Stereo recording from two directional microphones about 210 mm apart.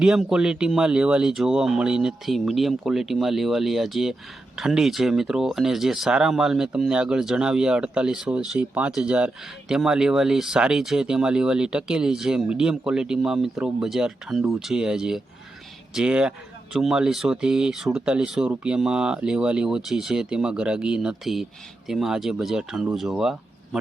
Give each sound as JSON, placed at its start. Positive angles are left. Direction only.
{"t": 0.0, "sound": "speech", "side_deg": -5}